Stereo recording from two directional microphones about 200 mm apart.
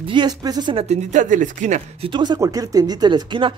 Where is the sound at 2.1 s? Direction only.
20° right (ahead or behind).